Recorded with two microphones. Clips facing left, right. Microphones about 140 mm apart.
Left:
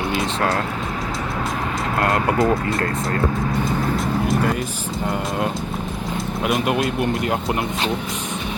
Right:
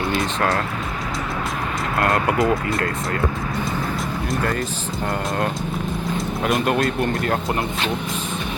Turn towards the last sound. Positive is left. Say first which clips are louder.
# even
turn(degrees=15)  # may be behind; listen again after turning